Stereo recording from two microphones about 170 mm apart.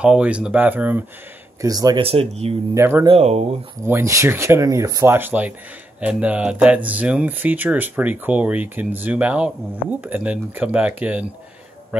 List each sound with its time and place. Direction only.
0.0 s speech: 5° right (ahead or behind)
1.6 s speech: 20° right (ahead or behind)
2.0 s speech: 35° right (ahead or behind)
2.7 s speech: 15° right (ahead or behind)
3.1 s speech: 40° right (ahead or behind)
3.8 s speech: 15° right (ahead or behind)
11.9 s a sound: 5° right (ahead or behind)